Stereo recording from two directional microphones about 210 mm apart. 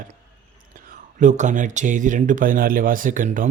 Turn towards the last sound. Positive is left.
turn(degrees=-40)  # may be behind; listen again after turning